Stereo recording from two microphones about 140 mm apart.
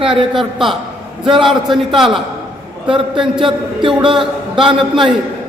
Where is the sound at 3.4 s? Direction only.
35° right (ahead or behind).